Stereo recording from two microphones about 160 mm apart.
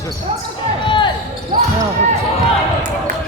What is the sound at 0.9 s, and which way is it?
Basketball bounce, 30° left (ahead or behind).